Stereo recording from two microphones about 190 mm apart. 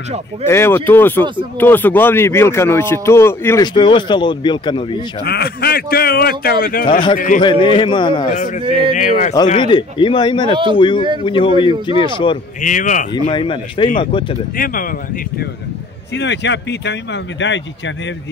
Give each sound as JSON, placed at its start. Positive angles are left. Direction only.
{"t": 0.5, "sound": "speech", "side_deg": 15}
{"t": 5.2, "sound": "a man's voice", "side_deg": 55}
{"t": 6.9, "sound": "a man's voice", "side_deg": 25}
{"t": 7.2, "sound": "a man's voice", "side_deg": 45}
{"t": 7.6, "sound": "a man's voice", "side_deg": 25}
{"t": 8.3, "sound": "speech", "side_deg": 40}
{"t": 8.6, "sound": "speech", "side_deg": -30}
{"t": 8.9, "sound": "speech", "side_deg": 40}
{"t": 9.5, "sound": "a man's voice", "side_deg": 25}
{"t": 11.7, "sound": "speech", "side_deg": -25}
{"t": 12.6, "sound": "a man's voice", "side_deg": 40}
{"t": 13.1, "sound": "a man's voice", "side_deg": 25}
{"t": 14.6, "sound": "a man's voice", "side_deg": 45}
{"t": 16.2, "sound": "speech", "side_deg": 65}